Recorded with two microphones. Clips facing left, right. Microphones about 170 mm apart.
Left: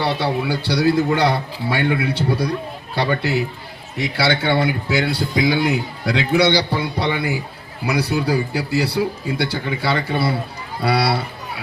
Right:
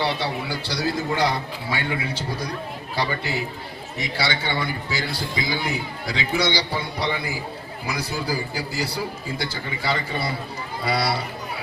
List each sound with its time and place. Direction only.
0.0 s a man's voice: 60° left (ahead or behind)